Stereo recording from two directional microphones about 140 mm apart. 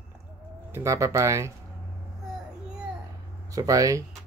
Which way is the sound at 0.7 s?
20° right (ahead or behind).